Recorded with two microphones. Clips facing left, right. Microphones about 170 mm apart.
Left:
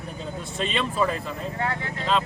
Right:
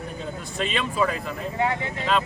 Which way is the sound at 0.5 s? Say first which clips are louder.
Even; centre (ahead or behind).